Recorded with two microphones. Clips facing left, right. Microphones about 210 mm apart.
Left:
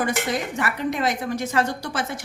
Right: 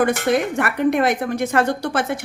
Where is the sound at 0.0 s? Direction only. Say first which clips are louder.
Right 7 dB; 60° right (ahead or behind).